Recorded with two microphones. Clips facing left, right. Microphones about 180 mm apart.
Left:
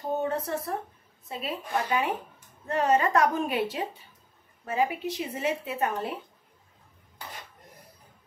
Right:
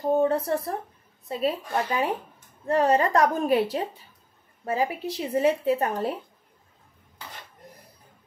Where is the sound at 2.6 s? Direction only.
35° right (ahead or behind).